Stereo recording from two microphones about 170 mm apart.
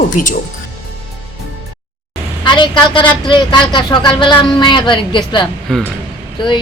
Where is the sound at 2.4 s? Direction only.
25° left (ahead or behind).